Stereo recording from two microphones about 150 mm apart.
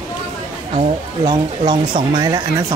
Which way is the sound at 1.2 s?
25° right (ahead or behind).